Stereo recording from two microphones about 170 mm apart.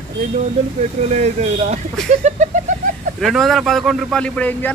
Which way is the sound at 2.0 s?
45° right (ahead or behind).